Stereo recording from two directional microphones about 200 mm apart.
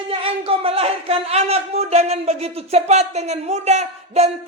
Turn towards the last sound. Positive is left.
turn(degrees=-30)  # may be behind; listen again after turning